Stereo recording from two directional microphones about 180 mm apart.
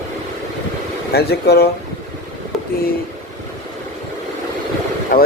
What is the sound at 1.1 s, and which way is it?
Speech, 60° left (ahead or behind).